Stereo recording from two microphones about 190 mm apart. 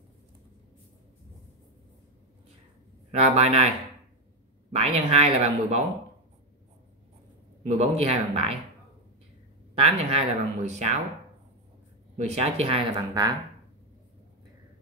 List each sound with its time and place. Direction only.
3.2 s speech: 35° right (ahead or behind)
7.6 s speech: 35° right (ahead or behind)
9.8 s speech: 35° right (ahead or behind)
12.2 s speech: 35° right (ahead or behind)